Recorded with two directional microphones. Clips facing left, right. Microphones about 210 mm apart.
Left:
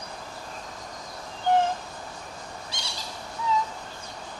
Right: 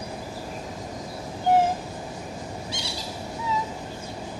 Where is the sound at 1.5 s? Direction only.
5° right (ahead or behind).